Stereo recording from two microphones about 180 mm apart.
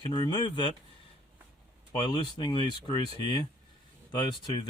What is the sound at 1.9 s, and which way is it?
Speech, 25° left (ahead or behind).